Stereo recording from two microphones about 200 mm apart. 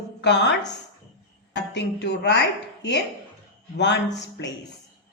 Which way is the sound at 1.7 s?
60° left (ahead or behind).